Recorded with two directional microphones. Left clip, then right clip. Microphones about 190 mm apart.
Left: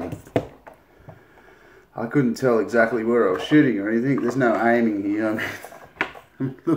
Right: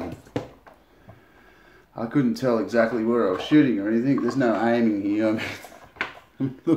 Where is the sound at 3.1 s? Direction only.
20° right (ahead or behind).